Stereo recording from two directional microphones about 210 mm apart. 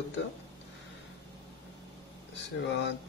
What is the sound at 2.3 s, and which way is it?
Speech, 55° left (ahead or behind).